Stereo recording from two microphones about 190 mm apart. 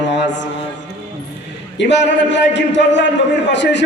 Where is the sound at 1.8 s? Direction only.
70° left (ahead or behind).